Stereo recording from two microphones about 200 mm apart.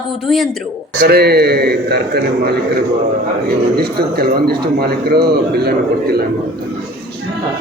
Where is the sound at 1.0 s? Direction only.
50° right (ahead or behind).